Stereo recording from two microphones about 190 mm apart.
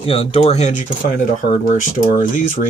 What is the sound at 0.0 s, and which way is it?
Speech, 30° left (ahead or behind).